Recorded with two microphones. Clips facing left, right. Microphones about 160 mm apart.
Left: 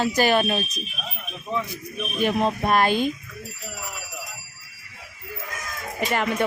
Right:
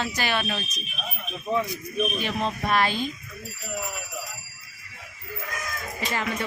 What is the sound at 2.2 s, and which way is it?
Speech, 50° left (ahead or behind).